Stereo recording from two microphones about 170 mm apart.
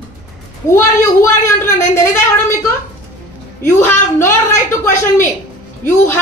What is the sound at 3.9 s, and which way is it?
Speech, 15° left (ahead or behind).